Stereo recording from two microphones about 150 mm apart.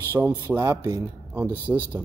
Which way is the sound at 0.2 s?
10° right (ahead or behind).